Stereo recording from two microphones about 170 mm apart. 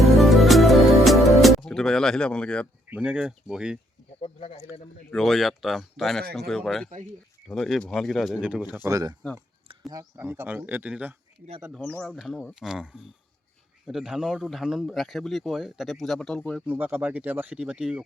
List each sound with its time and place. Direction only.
0.0 s music: centre (ahead or behind)
2.9 s speech: 5° right (ahead or behind)
4.2 s speech: 40° left (ahead or behind)
5.1 s speech: centre (ahead or behind)
11.7 s speech: 5° left (ahead or behind)
16.6 s speech: 10° right (ahead or behind)